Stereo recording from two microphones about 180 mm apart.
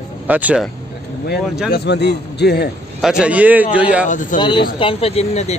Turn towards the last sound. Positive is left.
turn(degrees=35)  # may be behind; listen again after turning